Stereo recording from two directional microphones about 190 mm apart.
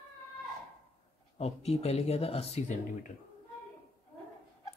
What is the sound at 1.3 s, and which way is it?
Speech, 35° left (ahead or behind).